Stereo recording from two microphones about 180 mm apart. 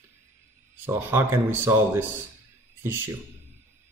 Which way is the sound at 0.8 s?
15° right (ahead or behind).